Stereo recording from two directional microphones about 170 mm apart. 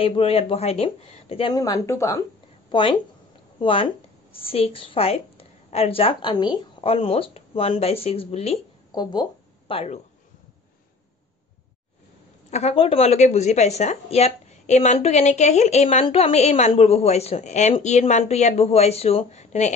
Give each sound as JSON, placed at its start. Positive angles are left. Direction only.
{"t": 0.0, "sound": "speech", "side_deg": 35}
{"t": 1.5, "sound": "a woman's voice", "side_deg": 20}
{"t": 2.7, "sound": "a woman's voice", "side_deg": 30}
{"t": 8.9, "sound": "speech", "side_deg": 25}
{"t": 12.4, "sound": "speech", "side_deg": 40}